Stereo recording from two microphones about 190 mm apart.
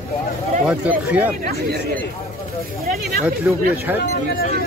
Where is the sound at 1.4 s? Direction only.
55° right (ahead or behind).